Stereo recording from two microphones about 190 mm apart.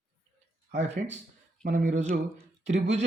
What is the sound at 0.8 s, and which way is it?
Speech, 35° right (ahead or behind).